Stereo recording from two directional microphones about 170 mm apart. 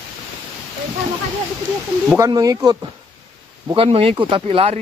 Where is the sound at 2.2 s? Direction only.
20° right (ahead or behind).